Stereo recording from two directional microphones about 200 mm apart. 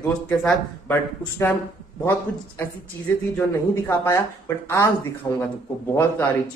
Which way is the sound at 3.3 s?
10° left (ahead or behind).